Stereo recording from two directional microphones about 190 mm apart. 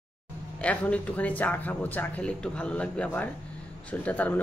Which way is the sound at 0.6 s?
5° left (ahead or behind).